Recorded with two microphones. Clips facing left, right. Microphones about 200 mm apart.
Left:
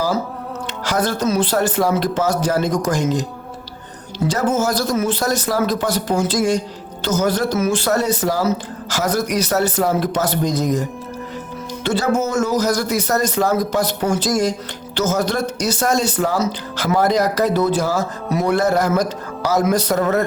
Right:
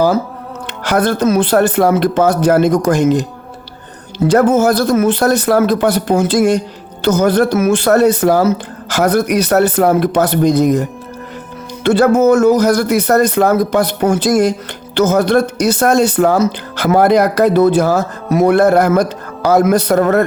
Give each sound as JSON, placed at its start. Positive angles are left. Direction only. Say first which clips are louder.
{"t": 0.9, "sound": "speech", "louder": "right 6 dB", "side_deg": -60}
{"t": 4.3, "sound": "speech", "louder": "right 8 dB", "side_deg": -60}